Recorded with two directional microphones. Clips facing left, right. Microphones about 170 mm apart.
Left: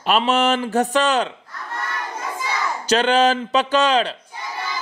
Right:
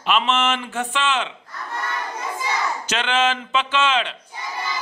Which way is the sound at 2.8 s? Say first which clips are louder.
Left 8 dB; 35° left (ahead or behind).